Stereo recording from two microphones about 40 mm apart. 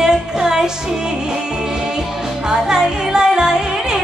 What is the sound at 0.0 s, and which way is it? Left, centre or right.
Music, centre.